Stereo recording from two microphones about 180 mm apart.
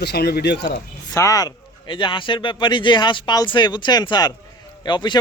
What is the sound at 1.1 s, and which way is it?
Speech, 20° left (ahead or behind).